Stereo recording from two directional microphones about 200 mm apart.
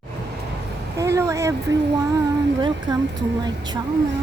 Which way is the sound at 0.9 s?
15° right (ahead or behind).